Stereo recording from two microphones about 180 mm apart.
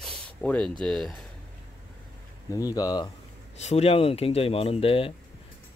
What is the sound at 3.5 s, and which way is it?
Speech, 35° left (ahead or behind).